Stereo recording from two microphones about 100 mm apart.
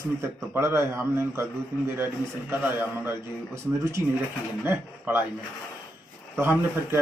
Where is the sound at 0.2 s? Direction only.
25° right (ahead or behind).